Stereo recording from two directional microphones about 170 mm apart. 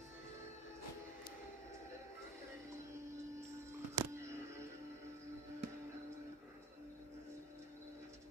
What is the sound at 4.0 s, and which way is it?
Music, 15° right (ahead or behind).